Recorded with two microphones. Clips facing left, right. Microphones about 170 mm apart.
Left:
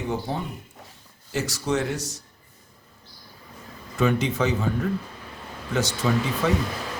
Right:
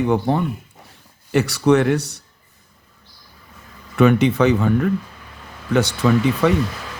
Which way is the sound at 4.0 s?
65° right (ahead or behind).